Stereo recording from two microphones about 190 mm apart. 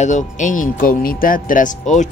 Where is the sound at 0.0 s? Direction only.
40° left (ahead or behind).